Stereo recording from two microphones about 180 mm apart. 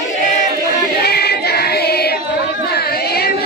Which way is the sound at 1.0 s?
60° left (ahead or behind).